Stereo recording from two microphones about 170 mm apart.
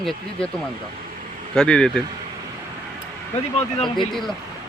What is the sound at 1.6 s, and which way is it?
Speech, 5° left (ahead or behind).